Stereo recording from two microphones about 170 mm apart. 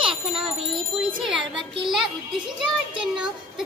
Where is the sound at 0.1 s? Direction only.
30° right (ahead or behind).